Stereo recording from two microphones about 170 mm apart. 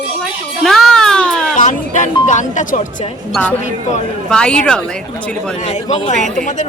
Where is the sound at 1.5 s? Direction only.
45° left (ahead or behind).